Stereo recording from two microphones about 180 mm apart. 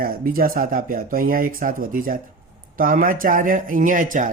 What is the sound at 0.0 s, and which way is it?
Speech, 55° right (ahead or behind).